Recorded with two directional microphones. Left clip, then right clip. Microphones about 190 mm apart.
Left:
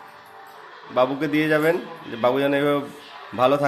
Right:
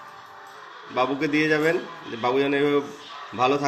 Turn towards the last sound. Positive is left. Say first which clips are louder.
# left 3 dB
turn(degrees=30)  # may be behind; listen again after turning